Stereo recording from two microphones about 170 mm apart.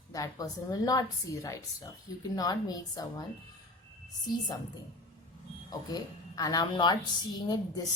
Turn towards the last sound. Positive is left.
turn(degrees=25)  # may be behind; listen again after turning